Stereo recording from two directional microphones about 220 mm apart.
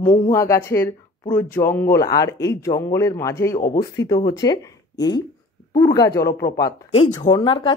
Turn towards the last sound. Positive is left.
turn(degrees=25)  # may be behind; listen again after turning